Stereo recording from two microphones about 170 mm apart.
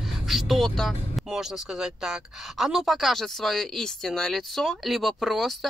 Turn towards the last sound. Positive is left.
turn(degrees=0)  # may be behind; listen again after turning